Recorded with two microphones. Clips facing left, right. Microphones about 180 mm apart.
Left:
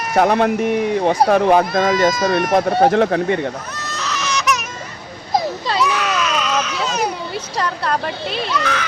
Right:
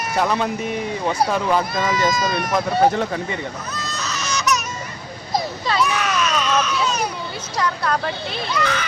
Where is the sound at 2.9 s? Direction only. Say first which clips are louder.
Left 8 dB; 65° left (ahead or behind).